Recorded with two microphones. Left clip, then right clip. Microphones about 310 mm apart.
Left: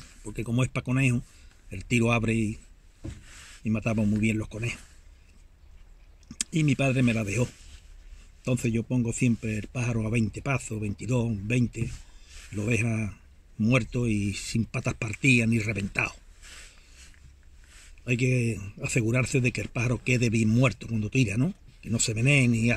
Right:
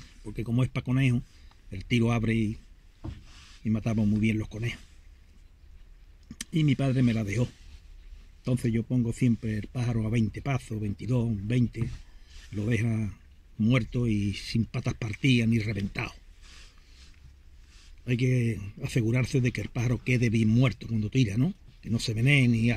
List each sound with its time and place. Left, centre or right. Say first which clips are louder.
0.2 s speech: left 2 dB; centre
3.6 s speech: left 2 dB; centre
6.2 s speech: left 1 dB; centre
8.5 s speech: left 2 dB; centre
14.3 s speech: left 1 dB; left
14.7 s speech: left 4 dB; centre
18.0 s speech: left 2 dB; centre
20.1 s speech: left 1 dB; left
20.3 s speech: left 2 dB; centre